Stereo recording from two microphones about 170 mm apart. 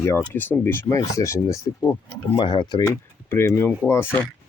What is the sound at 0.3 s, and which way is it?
Speech, 10° left (ahead or behind).